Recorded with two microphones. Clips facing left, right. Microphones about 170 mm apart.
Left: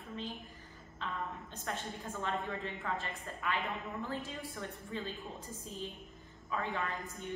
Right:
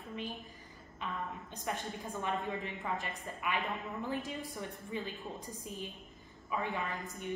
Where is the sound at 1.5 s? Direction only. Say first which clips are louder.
Right 5 dB; 15° right (ahead or behind).